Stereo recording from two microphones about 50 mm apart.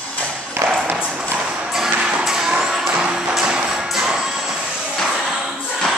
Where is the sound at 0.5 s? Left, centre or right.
Right.